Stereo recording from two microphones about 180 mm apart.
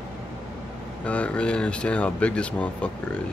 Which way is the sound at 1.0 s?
5° left (ahead or behind).